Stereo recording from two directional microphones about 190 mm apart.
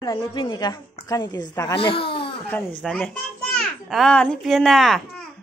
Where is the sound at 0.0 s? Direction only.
25° left (ahead or behind).